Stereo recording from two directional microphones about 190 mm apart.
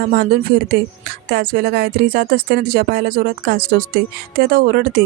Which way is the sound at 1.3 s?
55° right (ahead or behind).